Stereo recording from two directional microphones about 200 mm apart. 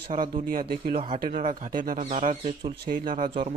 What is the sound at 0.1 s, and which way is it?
Speech, 45° right (ahead or behind).